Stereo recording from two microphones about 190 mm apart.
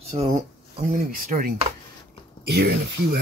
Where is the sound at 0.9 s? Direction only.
50° right (ahead or behind).